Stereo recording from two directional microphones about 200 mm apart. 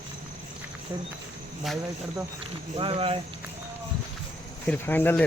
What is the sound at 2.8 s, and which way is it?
Speech, 25° right (ahead or behind).